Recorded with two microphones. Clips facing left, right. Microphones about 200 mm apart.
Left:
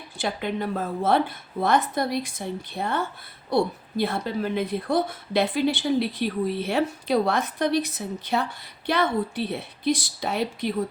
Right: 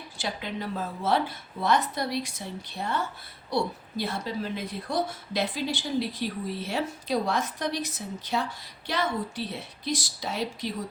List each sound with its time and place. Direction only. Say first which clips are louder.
0.2 s a woman's voice: left 6 dB; 55° left (ahead or behind)